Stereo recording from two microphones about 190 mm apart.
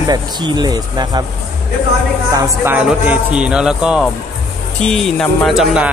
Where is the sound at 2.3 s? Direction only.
15° right (ahead or behind).